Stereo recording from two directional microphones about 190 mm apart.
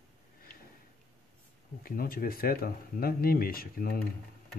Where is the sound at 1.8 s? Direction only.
50° left (ahead or behind).